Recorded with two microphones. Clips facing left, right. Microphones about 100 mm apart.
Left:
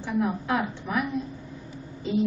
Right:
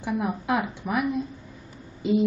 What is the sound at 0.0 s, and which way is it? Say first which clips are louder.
A woman's voice: left 1 dB; 15° right (ahead or behind).